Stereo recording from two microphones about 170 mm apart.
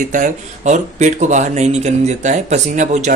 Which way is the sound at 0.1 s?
45° right (ahead or behind).